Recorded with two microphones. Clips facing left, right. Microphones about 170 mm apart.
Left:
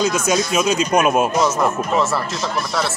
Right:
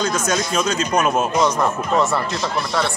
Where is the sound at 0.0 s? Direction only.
10° left (ahead or behind).